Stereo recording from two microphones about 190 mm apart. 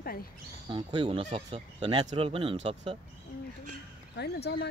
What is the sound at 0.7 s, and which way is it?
Speech, 25° right (ahead or behind).